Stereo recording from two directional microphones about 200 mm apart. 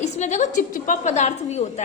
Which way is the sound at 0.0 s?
35° left (ahead or behind).